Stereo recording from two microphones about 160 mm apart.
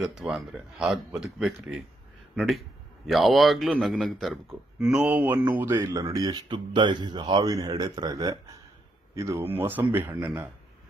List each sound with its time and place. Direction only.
0.0 s speech: 5° right (ahead or behind)
3.1 s a man's voice: centre (ahead or behind)